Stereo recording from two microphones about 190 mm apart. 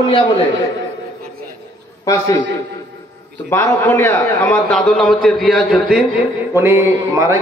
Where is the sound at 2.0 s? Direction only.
20° left (ahead or behind).